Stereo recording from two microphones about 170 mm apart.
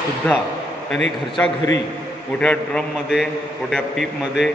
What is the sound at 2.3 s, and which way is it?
A man's voice, 5° left (ahead or behind).